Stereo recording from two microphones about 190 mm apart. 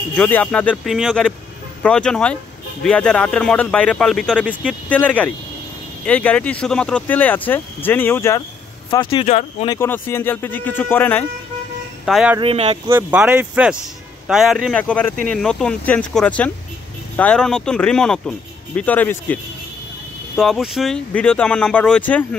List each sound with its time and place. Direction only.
0.1 s speech: 5° left (ahead or behind)
8.9 s speech: 25° left (ahead or behind)
9.7 s speech: 10° left (ahead or behind)
12.1 s speech: centre (ahead or behind)
12.4 s speech: 30° right (ahead or behind)
12.8 s speech: 10° right (ahead or behind); by 22.2 s 5° left (ahead or behind)